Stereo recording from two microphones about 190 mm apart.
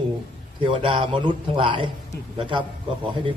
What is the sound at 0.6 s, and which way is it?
A man's voice, 25° right (ahead or behind).